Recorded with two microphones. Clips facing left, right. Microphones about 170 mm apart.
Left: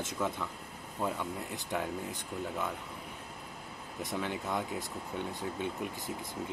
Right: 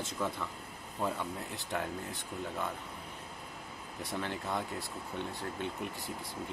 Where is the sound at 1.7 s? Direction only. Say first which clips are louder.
Left 1 dB; 5° left (ahead or behind).